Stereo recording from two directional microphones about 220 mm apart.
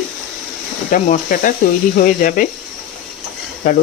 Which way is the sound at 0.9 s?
40° left (ahead or behind).